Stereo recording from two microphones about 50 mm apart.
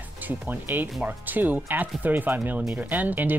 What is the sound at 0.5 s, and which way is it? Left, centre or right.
Speech, right.